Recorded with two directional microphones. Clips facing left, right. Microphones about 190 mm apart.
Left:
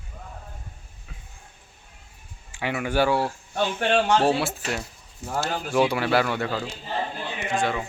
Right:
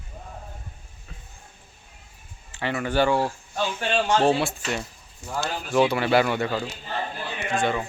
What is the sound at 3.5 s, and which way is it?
Speech, 60° left (ahead or behind).